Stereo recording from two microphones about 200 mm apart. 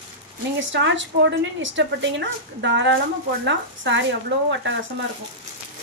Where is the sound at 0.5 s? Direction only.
65° right (ahead or behind).